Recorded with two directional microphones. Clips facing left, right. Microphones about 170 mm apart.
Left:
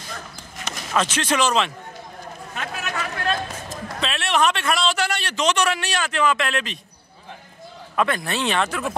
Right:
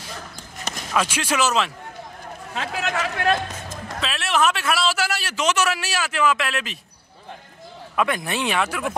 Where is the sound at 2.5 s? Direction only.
90° right.